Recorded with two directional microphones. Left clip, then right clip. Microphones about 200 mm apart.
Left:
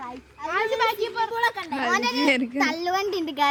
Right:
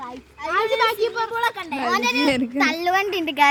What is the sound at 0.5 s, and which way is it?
Speech, 30° left (ahead or behind).